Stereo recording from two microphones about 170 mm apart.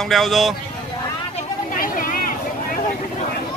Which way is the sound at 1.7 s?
55° left (ahead or behind).